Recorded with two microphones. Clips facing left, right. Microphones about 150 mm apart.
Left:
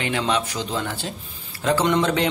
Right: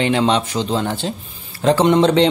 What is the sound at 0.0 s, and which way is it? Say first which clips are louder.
Speech: right 7 dB; 30° right (ahead or behind).